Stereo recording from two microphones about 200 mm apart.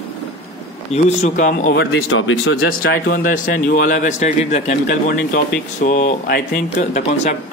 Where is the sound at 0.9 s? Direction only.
35° left (ahead or behind); by 2.6 s 85° left.